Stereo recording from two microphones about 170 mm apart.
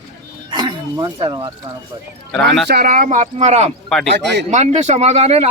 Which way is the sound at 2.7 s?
60° right (ahead or behind).